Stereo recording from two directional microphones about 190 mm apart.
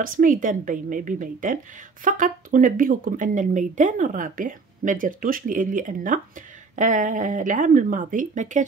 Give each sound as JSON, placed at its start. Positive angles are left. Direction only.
{"t": 0.0, "sound": "speech", "side_deg": -45}